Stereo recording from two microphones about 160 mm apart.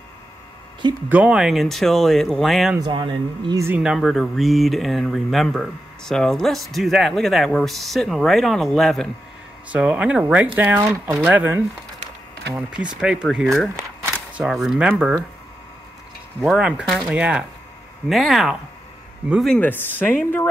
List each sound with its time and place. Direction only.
1.0 s speech: 10° right (ahead or behind)
2.8 s speech: 30° right (ahead or behind)
3.6 s speech: 10° right (ahead or behind)
12.9 s speech: 5° right (ahead or behind)
16.3 s speech: 5° right (ahead or behind)
19.5 s speech: 10° left (ahead or behind)